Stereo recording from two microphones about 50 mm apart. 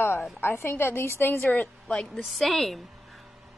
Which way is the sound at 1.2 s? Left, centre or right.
Left.